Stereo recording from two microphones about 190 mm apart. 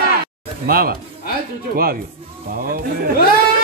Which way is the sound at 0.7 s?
50° right (ahead or behind).